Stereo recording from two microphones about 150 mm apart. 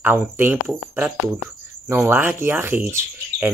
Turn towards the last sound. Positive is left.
turn(degrees=-15)  # may be behind; listen again after turning